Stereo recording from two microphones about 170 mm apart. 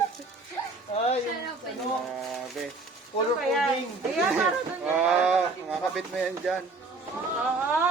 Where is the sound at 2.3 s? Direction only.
Centre (ahead or behind).